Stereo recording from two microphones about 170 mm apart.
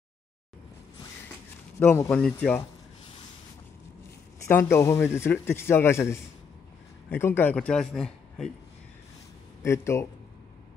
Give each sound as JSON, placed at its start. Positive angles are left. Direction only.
{"t": 1.8, "sound": "a man's voice", "side_deg": 10}
{"t": 4.5, "sound": "a man's voice", "side_deg": 15}
{"t": 9.6, "sound": "a man's voice", "side_deg": 15}